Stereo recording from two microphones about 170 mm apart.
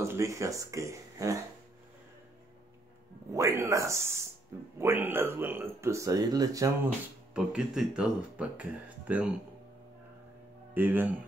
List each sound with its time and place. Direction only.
0.0 s speech: 15° right (ahead or behind)
3.3 s speech: 20° right (ahead or behind)
7.3 s speech: 5° right (ahead or behind)
10.7 s speech: 10° right (ahead or behind)